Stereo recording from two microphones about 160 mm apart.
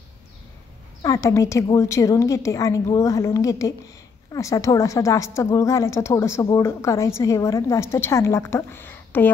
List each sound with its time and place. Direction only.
1.0 s a woman's voice: 20° left (ahead or behind)